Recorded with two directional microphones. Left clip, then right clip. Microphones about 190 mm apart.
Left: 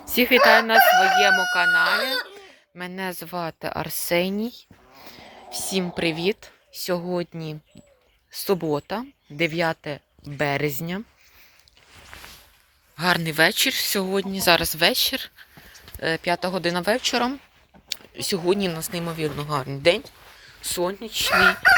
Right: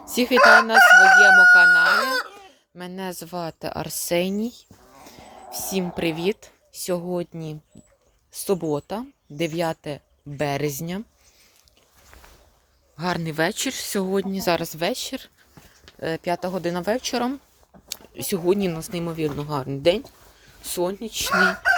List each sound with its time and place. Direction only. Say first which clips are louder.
0.0 s fowl: left 3 dB; 5° right (ahead or behind)
0.4 s speech: right 4 dB; 5° right (ahead or behind)
12.1 s a sound: left 8 dB; 30° left (ahead or behind)
13.0 s speech: left 5 dB; 10° right (ahead or behind)
17.8 s speech: left 3 dB; 20° right (ahead or behind)